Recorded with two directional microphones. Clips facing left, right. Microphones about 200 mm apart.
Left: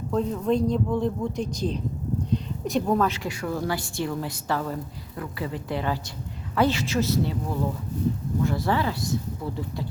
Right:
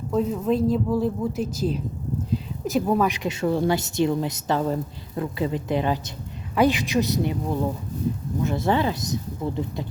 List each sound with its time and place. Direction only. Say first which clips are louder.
0.1 s a woman's voice: right 1 dB; 5° right (ahead or behind)
3.2 s a woman's voice: right 6 dB; 25° right (ahead or behind)
8.4 s a woman's voice: right 4 dB; 20° right (ahead or behind)